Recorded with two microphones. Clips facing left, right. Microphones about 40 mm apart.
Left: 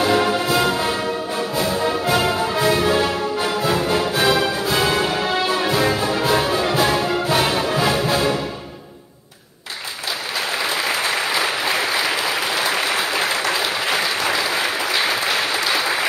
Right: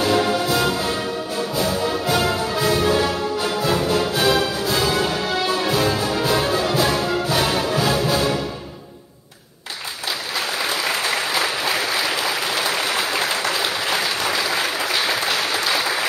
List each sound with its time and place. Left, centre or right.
0.0 s music: centre
14.6 s applause: centre